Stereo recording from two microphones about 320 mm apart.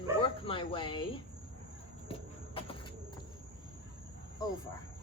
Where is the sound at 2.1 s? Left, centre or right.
Centre.